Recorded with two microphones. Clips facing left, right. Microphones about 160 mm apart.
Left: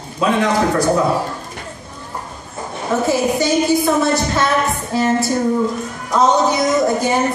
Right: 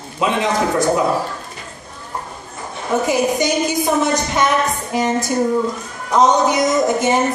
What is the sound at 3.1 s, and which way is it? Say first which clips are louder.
A woman's voice: left 1 dB; 15° right (ahead or behind).